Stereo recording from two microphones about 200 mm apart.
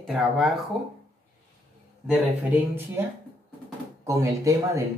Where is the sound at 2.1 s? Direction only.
10° right (ahead or behind).